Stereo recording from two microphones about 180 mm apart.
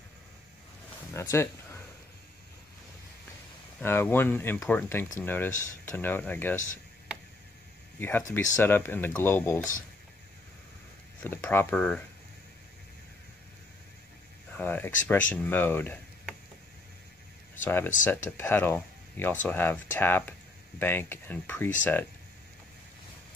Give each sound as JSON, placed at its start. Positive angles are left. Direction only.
{"t": 1.1, "sound": "speech", "side_deg": 15}
{"t": 3.8, "sound": "speech", "side_deg": 10}
{"t": 8.0, "sound": "speech", "side_deg": 15}
{"t": 11.2, "sound": "speech", "side_deg": 10}
{"t": 14.5, "sound": "speech", "side_deg": 10}
{"t": 17.6, "sound": "speech", "side_deg": 10}